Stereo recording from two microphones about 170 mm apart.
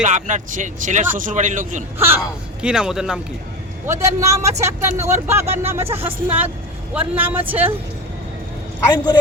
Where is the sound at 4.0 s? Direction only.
15° right (ahead or behind).